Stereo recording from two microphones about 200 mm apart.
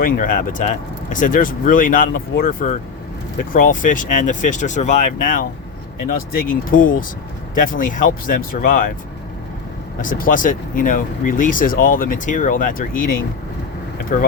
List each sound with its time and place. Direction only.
0.0 s speech: 40° left (ahead or behind)
10.0 s speech: 45° left (ahead or behind)